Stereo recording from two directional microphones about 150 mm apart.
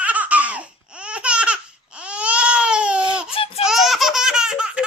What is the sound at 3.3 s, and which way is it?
Baby cry, 40° left (ahead or behind).